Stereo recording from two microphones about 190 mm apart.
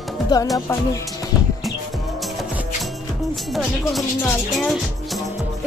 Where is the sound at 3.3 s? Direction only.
Centre (ahead or behind).